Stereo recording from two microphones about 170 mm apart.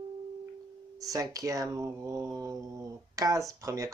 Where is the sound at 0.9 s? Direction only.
20° right (ahead or behind).